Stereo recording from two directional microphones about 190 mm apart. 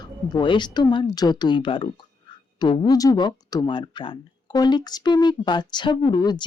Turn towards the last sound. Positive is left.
turn(degrees=20)  # may be behind; listen again after turning